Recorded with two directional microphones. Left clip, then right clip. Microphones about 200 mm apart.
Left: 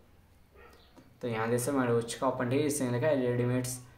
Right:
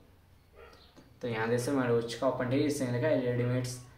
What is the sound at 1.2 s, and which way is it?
Speech, 20° left (ahead or behind).